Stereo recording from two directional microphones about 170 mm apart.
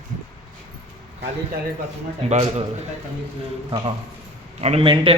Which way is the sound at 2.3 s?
40° right (ahead or behind).